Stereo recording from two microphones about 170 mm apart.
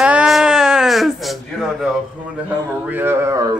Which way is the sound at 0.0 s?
5° right (ahead or behind).